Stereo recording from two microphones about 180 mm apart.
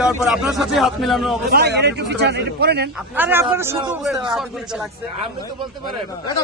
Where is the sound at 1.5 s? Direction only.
60° right (ahead or behind).